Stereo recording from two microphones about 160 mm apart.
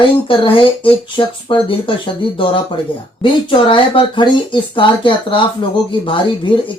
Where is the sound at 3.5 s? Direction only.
30° left (ahead or behind).